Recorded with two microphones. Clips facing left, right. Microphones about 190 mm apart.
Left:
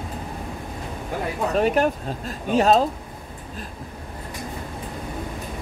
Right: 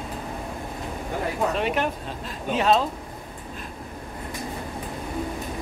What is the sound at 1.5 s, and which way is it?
Speech, 40° left (ahead or behind).